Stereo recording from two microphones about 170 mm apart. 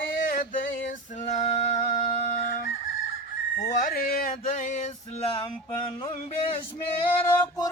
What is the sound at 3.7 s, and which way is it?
Male singing, 65° left (ahead or behind).